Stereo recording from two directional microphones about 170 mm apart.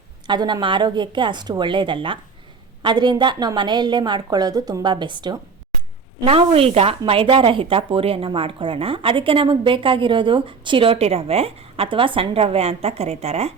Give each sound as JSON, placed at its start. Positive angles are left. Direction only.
{"t": 0.3, "sound": "a woman's voice", "side_deg": -25}